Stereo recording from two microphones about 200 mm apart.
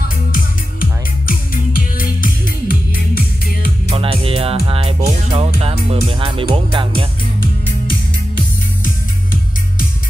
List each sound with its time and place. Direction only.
0.3 s music: 45° left (ahead or behind)
3.9 s music: 25° right (ahead or behind)
8.8 s music: 45° left (ahead or behind)